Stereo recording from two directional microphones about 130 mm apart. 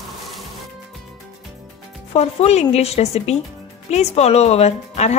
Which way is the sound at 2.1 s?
55° left (ahead or behind).